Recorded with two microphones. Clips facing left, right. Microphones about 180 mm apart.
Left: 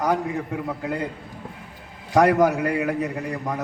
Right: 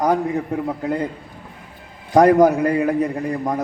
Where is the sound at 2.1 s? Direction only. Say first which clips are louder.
Right 5 dB; 35° right (ahead or behind).